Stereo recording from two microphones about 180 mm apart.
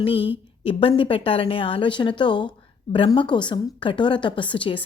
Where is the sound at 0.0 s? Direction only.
30° left (ahead or behind).